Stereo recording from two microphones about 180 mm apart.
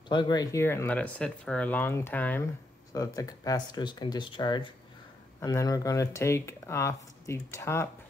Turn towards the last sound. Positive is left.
turn(degrees=15)  # may be behind; listen again after turning